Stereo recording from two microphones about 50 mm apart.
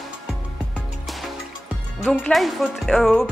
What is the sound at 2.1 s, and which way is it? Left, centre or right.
Speech, centre.